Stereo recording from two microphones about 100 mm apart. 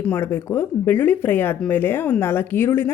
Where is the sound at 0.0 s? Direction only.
20° left (ahead or behind).